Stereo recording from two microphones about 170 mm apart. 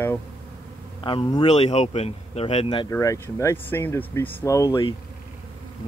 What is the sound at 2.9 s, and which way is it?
Speech, 15° left (ahead or behind).